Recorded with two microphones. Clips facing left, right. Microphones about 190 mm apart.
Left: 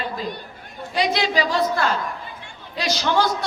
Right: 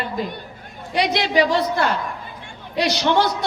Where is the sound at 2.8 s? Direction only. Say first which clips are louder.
Right 4 dB; 65° right (ahead or behind).